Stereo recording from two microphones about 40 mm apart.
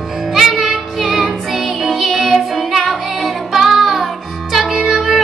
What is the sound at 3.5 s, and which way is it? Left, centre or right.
Child singing, centre.